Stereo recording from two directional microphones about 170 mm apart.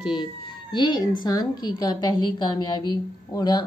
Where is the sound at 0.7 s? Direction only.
30° left (ahead or behind).